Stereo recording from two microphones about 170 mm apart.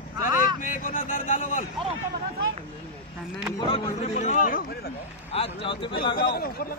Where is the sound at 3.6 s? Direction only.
35° left (ahead or behind); by 4.6 s 50° left (ahead or behind).